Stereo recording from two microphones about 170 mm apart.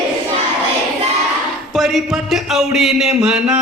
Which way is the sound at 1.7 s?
Centre (ahead or behind).